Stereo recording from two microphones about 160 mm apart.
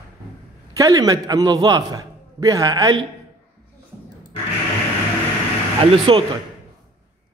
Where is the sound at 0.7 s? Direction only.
20° right (ahead or behind).